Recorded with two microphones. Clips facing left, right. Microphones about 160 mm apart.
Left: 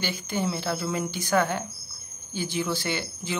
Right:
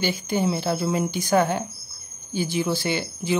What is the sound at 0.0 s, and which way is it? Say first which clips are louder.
Speech: right 5 dB; 15° right (ahead or behind).